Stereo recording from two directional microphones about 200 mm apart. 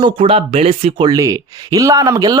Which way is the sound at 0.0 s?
25° right (ahead or behind).